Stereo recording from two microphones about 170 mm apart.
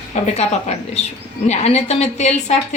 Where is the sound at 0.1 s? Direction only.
40° left (ahead or behind).